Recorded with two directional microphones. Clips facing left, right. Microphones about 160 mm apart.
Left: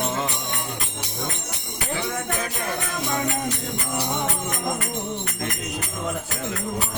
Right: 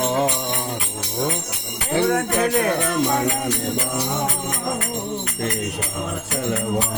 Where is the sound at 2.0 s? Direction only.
65° right (ahead or behind).